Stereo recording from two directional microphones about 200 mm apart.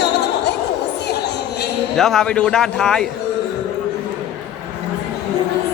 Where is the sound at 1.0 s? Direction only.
55° left (ahead or behind).